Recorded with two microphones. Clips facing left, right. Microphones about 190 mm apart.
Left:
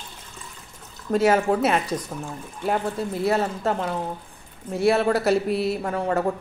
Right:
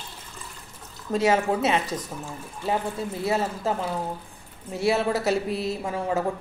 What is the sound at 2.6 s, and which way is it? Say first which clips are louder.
A woman's voice: left 2 dB; centre (ahead or behind).